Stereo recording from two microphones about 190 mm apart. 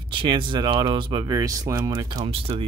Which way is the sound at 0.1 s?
25° right (ahead or behind).